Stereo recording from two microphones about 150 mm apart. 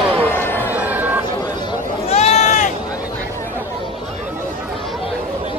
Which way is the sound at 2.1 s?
45° left (ahead or behind).